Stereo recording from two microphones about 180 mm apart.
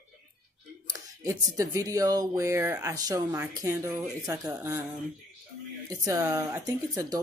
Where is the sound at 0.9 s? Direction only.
15° right (ahead or behind).